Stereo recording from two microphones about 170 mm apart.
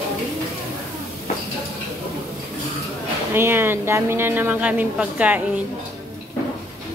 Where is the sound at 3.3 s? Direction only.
15° right (ahead or behind).